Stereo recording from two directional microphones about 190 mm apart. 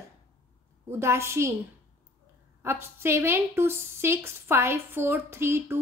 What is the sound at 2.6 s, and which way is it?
A woman's voice, 15° right (ahead or behind).